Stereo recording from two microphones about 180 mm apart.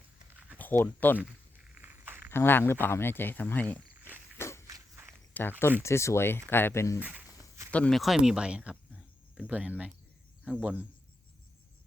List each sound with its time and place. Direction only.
0.3 s a sound: 10° right (ahead or behind)
0.6 s speech: 10° left (ahead or behind)
1.8 s a sound: 10° right (ahead or behind)
2.3 s speech: 10° left (ahead or behind)
4.4 s walk: 15° left (ahead or behind)
4.6 s walk: 15° right (ahead or behind)
5.3 s speech: 10° left (ahead or behind)
7.0 s walk: 10° right (ahead or behind)
7.7 s speech: 5° left (ahead or behind)